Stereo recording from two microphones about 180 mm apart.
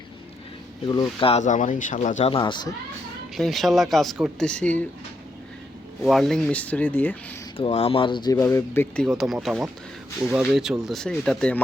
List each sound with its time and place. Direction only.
0.9 s speech: 25° left (ahead or behind)
2.3 s speech: 25° left (ahead or behind)
3.3 s speech: centre (ahead or behind)
6.0 s speech: centre (ahead or behind)
7.5 s speech: 30° left (ahead or behind); by 9.0 s 10° left (ahead or behind)
9.0 s speech: centre (ahead or behind)